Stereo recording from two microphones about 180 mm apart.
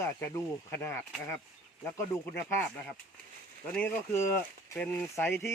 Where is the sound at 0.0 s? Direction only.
10° left (ahead or behind).